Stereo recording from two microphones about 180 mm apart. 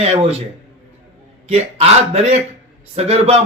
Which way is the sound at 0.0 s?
35° right (ahead or behind).